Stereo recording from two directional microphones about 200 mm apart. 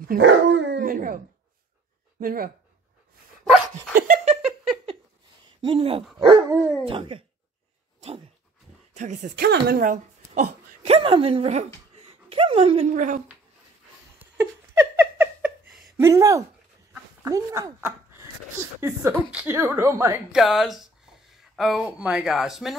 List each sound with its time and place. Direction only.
0.2 s dog: 65° right (ahead or behind)
0.7 s a sound: 45° right (ahead or behind)
2.1 s speech: 45° right (ahead or behind)
3.9 s a sound: 40° right (ahead or behind)
5.6 s speech: 25° right (ahead or behind)
6.1 s dog: 20° right (ahead or behind)
6.9 s speech: 25° right (ahead or behind)
8.9 s speech: 40° right (ahead or behind)
14.3 s a sound: 10° right (ahead or behind)
16.0 s speech: 15° right (ahead or behind)
20.3 s speech: centre (ahead or behind)